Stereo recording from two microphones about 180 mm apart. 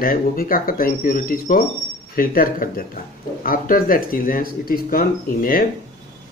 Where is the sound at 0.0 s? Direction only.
55° left (ahead or behind).